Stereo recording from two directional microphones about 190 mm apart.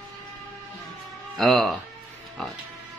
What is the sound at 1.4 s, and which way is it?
Speech, centre (ahead or behind).